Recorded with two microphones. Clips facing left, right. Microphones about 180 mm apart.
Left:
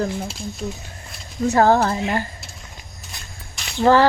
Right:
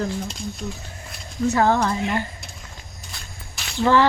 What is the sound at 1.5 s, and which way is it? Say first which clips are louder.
Speech: left 4 dB; 35° left (ahead or behind).